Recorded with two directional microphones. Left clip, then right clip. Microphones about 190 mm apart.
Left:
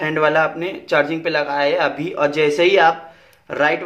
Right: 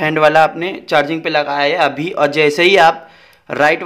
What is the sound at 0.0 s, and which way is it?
Speech, 40° right (ahead or behind).